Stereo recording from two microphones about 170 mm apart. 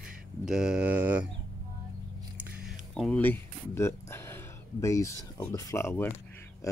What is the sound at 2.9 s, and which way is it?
Speech, 5° left (ahead or behind).